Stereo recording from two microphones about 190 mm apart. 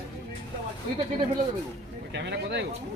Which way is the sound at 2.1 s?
65° right (ahead or behind).